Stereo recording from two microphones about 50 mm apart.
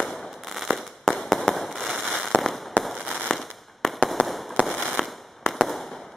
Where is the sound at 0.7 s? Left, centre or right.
Centre.